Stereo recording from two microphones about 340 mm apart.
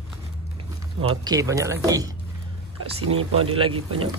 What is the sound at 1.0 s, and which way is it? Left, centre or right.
A child's voice, centre.